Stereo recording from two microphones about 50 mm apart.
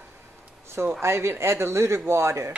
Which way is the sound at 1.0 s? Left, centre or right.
Right.